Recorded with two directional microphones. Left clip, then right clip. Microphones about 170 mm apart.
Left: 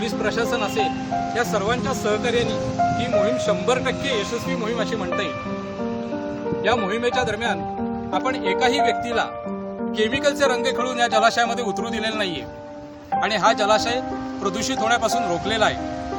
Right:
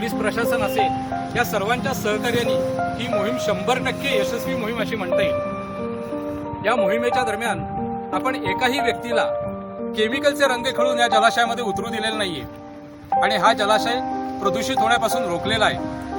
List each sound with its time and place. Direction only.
0.0 s speech: 30° right (ahead or behind)
1.4 s speech: 45° right (ahead or behind)
6.7 s a man's voice: 15° right (ahead or behind)
8.1 s speech: 5° right (ahead or behind)